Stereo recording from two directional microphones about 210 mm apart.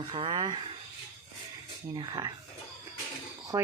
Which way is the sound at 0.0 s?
25° right (ahead or behind).